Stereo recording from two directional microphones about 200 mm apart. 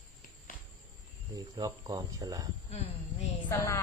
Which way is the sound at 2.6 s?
30° left (ahead or behind).